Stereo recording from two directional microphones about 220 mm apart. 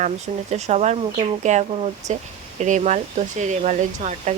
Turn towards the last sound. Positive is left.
turn(degrees=-30)  # may be behind; listen again after turning